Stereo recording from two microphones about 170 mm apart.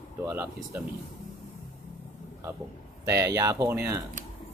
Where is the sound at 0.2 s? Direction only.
15° right (ahead or behind).